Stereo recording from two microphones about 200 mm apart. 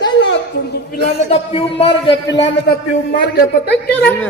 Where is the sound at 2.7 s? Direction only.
50° left (ahead or behind).